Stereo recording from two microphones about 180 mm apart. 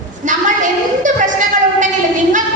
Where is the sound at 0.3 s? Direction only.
45° right (ahead or behind).